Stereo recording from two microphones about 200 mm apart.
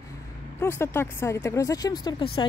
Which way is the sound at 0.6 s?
10° left (ahead or behind).